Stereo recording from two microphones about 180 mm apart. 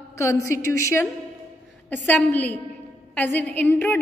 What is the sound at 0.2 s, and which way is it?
A woman's voice, 15° left (ahead or behind).